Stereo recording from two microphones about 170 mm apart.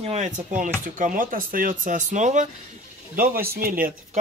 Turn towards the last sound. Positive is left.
turn(degrees=-60)  # may be behind; listen again after turning